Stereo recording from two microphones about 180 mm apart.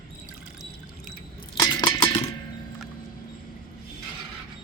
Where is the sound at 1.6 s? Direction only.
25° left (ahead or behind).